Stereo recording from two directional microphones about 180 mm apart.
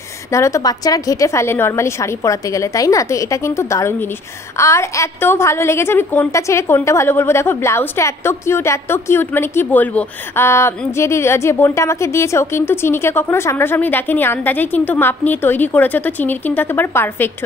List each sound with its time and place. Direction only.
0.3 s a woman's voice: 15° left (ahead or behind)